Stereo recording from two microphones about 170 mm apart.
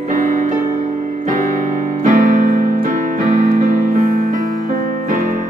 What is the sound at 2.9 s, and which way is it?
Keyboard, 45° right (ahead or behind).